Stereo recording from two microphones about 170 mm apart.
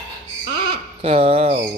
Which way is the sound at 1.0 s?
35° right (ahead or behind).